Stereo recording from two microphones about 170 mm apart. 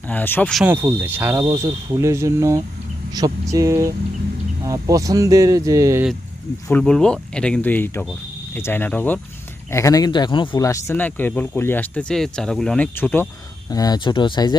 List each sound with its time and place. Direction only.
0.1 s speech: 10° left (ahead or behind)
0.5 s speech: 10° right (ahead or behind)
6.7 s speech: 5° left (ahead or behind)
9.7 s speech: 20° left (ahead or behind)
13.7 s speech: 20° left (ahead or behind)